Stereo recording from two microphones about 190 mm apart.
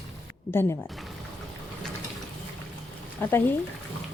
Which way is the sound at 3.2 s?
10° left (ahead or behind).